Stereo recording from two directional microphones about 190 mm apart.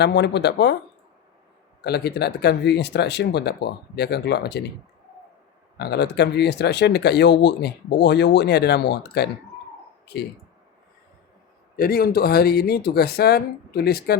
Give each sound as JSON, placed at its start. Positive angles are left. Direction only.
{"t": 0.0, "sound": "speech", "side_deg": 65}
{"t": 1.8, "sound": "speech", "side_deg": 60}
{"t": 5.7, "sound": "speech", "side_deg": 60}
{"t": 11.8, "sound": "speech", "side_deg": 50}